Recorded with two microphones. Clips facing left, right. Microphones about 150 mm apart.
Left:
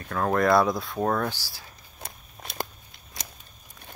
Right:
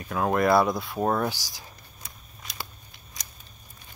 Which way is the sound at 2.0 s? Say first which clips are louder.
Left 5 dB; 60° left (ahead or behind).